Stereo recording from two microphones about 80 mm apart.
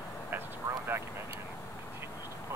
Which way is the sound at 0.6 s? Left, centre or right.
Right.